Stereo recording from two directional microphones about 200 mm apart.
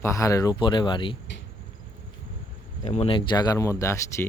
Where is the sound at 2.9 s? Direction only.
30° left (ahead or behind); by 4.2 s 15° left (ahead or behind).